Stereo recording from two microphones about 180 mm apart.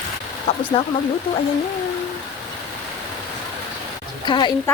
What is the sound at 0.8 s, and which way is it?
Speech, 35° left (ahead or behind).